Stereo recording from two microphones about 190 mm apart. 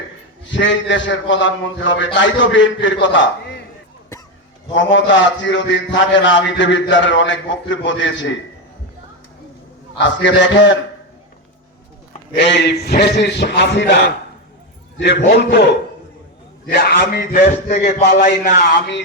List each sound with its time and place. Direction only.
0.5 s a man's voice: 75° left (ahead or behind)
4.7 s a man's voice: 75° left (ahead or behind)
10.0 s a man's voice: 75° left (ahead or behind)
12.4 s a man's voice: 65° left (ahead or behind)
15.2 s a man's voice: 60° left (ahead or behind); by 18.6 s 40° left (ahead or behind)